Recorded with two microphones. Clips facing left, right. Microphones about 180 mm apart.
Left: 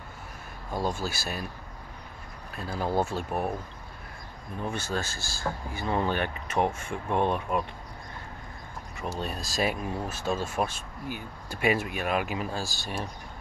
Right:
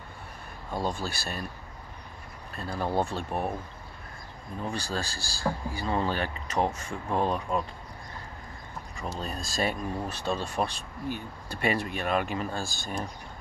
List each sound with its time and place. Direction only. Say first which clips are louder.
0.7 s speech: left 1 dB; 5° left (ahead or behind)
2.5 s speech: left 1 dB; 5° left (ahead or behind)
4.7 s speech: left 1 dB; 20° left (ahead or behind)
9.2 s speech: left 1 dB; 5° left (ahead or behind)